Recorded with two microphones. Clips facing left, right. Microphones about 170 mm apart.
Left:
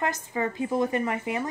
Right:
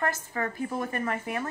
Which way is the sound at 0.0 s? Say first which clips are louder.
Left 2 dB; 15° left (ahead or behind).